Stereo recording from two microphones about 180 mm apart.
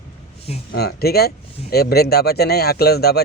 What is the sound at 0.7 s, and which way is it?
A man's voice, 60° left (ahead or behind).